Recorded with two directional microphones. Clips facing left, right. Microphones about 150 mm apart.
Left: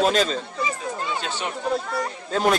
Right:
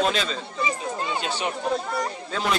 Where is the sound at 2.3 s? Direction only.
45° left (ahead or behind).